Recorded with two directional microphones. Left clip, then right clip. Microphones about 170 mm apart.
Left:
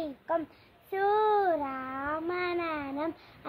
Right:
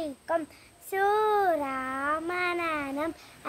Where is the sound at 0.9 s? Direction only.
15° right (ahead or behind).